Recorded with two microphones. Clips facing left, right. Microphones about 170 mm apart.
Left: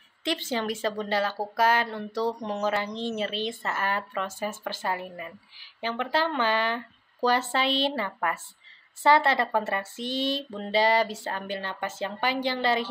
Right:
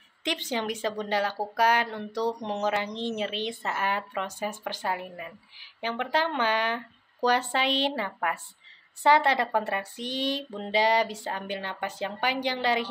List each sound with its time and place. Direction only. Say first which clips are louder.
0.2 s speech: left 1 dB; 15° right (ahead or behind)